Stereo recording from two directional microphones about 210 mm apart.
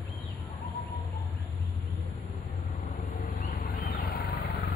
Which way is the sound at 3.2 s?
40° left (ahead or behind).